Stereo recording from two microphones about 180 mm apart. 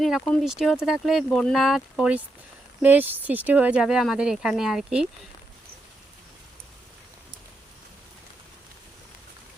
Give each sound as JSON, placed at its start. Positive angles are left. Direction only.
{"t": 0.0, "sound": "speech", "side_deg": 0}